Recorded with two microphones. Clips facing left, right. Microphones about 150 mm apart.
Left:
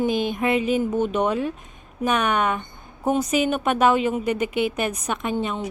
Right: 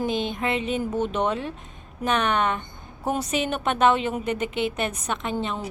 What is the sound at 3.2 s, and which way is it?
Speech, 30° right (ahead or behind).